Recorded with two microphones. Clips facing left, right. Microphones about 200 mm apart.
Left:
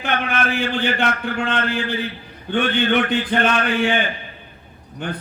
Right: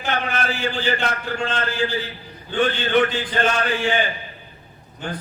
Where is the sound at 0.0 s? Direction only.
60° left (ahead or behind).